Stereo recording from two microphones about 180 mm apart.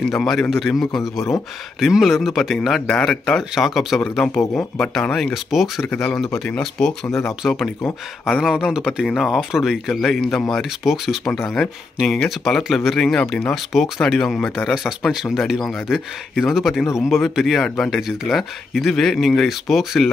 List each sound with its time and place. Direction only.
0.1 s speech: centre (ahead or behind)
7.1 s speech: 15° left (ahead or behind)
7.4 s speech: centre (ahead or behind)